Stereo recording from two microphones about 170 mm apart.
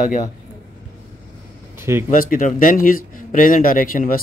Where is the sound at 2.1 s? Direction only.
55° left (ahead or behind).